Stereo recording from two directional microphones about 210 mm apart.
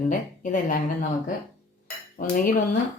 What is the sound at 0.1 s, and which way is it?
Speech, 40° left (ahead or behind).